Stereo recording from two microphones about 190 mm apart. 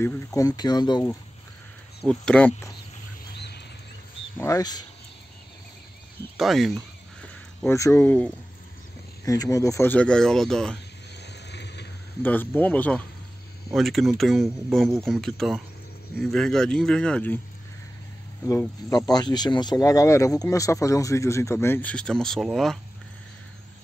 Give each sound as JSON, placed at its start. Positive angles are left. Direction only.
{"t": 0.0, "sound": "speech", "side_deg": 15}
{"t": 2.0, "sound": "speech", "side_deg": 5}
{"t": 3.3, "sound": "a sound", "side_deg": 60}
{"t": 4.4, "sound": "speech", "side_deg": 15}
{"t": 6.3, "sound": "speech", "side_deg": 0}
{"t": 7.7, "sound": "speech", "side_deg": 15}
{"t": 11.2, "sound": "vehicle", "side_deg": 60}
{"t": 12.2, "sound": "speech", "side_deg": 10}
{"t": 18.4, "sound": "speech", "side_deg": 15}